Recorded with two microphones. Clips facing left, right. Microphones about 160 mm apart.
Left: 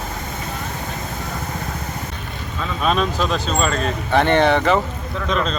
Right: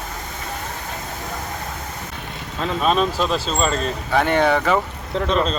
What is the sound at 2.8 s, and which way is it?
Speech, centre (ahead or behind).